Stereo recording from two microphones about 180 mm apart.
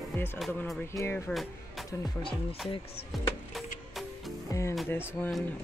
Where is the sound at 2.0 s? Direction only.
30° left (ahead or behind).